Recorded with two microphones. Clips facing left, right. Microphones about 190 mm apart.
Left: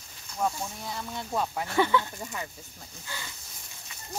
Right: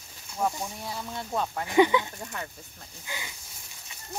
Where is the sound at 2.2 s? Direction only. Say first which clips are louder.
Even; 5° left (ahead or behind).